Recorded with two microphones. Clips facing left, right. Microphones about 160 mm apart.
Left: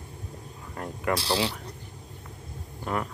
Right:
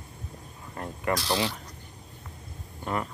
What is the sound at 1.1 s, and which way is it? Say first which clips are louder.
Speech: left 1 dB; 30° left (ahead or behind).